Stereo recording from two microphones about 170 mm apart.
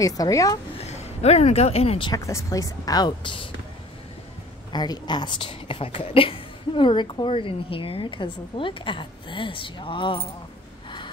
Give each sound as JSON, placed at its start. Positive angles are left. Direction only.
{"t": 0.0, "sound": "speech", "side_deg": 20}
{"t": 0.7, "sound": "speech", "side_deg": 40}
{"t": 4.7, "sound": "speech", "side_deg": 25}